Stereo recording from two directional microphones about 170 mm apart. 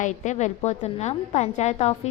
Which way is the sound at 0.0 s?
45° left (ahead or behind).